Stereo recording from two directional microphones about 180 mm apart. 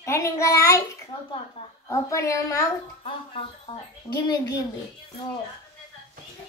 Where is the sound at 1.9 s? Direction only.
15° left (ahead or behind).